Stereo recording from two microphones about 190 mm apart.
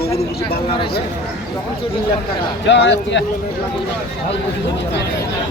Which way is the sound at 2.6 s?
70° left (ahead or behind).